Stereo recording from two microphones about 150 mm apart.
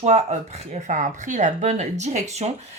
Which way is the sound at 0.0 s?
50° right (ahead or behind).